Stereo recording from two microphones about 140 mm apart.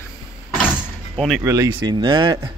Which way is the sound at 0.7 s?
5° left (ahead or behind).